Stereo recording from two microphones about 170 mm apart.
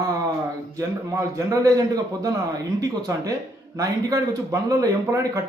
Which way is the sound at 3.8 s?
20° right (ahead or behind).